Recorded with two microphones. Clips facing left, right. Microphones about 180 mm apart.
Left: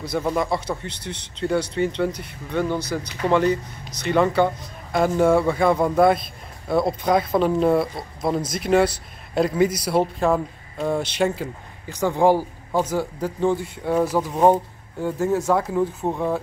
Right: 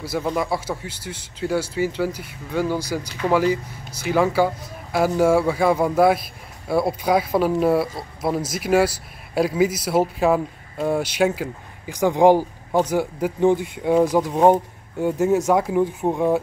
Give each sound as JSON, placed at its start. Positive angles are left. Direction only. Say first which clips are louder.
{"t": 0.0, "sound": "a man's voice", "louder": "left 1 dB", "side_deg": -5}